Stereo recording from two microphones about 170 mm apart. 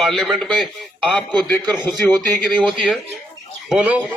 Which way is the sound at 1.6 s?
25° right (ahead or behind).